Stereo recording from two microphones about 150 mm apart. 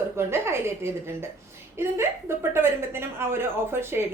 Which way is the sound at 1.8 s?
15° right (ahead or behind).